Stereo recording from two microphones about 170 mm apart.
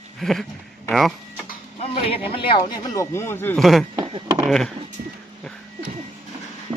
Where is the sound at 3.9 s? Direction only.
25° right (ahead or behind).